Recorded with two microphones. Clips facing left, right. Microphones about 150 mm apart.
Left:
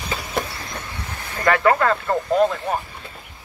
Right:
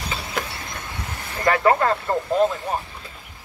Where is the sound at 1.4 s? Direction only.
25° right (ahead or behind).